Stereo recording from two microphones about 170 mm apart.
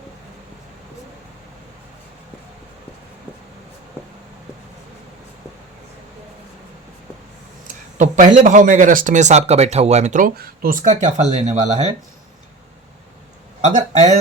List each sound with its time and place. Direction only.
7.9 s speech: 45° right (ahead or behind)
13.6 s speech: 40° right (ahead or behind)